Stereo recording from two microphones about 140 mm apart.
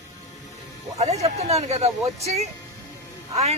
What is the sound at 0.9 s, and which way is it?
A woman's voice, 50° right (ahead or behind).